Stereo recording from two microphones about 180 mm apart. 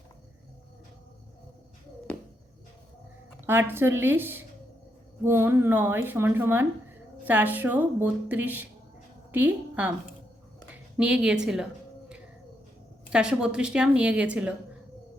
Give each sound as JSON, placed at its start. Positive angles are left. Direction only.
{"t": 3.4, "sound": "a woman's voice", "side_deg": -10}
{"t": 10.9, "sound": "a woman's voice", "side_deg": -5}
{"t": 13.1, "sound": "a woman's voice", "side_deg": -5}